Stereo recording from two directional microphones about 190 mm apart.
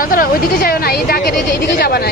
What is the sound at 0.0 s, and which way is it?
Speech, 50° left (ahead or behind).